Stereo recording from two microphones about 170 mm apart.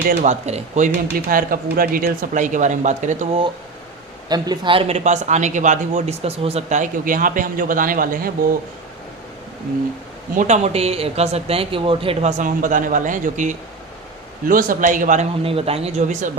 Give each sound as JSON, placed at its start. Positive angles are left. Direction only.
{"t": 0.1, "sound": "speech", "side_deg": -40}
{"t": 1.3, "sound": "speech", "side_deg": -55}
{"t": 4.3, "sound": "speech", "side_deg": -25}
{"t": 10.3, "sound": "speech", "side_deg": -45}
{"t": 12.4, "sound": "speech", "side_deg": -50}